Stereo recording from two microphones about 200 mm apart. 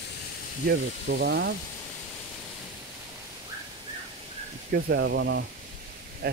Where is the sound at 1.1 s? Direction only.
55° right (ahead or behind).